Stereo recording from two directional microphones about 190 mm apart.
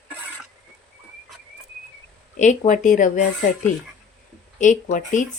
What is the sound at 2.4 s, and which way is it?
Speech, 40° left (ahead or behind).